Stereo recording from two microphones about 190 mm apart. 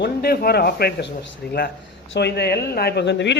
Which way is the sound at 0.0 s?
55° left (ahead or behind).